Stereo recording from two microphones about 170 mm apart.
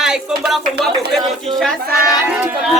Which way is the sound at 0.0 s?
5° right (ahead or behind).